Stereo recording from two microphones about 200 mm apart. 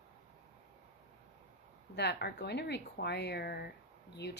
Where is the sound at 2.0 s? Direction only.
55° left (ahead or behind).